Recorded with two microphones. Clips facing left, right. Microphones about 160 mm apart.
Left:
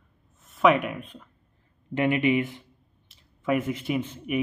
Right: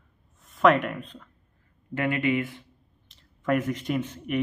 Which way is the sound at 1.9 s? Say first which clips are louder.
Left 3 dB; 20° left (ahead or behind).